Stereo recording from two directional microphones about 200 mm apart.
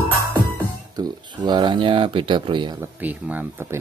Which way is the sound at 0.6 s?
20° right (ahead or behind).